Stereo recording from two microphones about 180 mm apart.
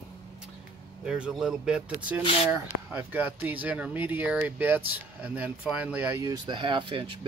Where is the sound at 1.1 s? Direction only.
5° right (ahead or behind).